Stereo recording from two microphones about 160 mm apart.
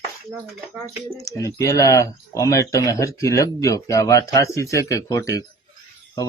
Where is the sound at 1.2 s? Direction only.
20° left (ahead or behind).